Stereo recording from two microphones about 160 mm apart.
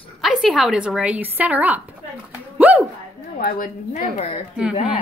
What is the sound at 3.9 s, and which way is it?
Speech, 40° left (ahead or behind).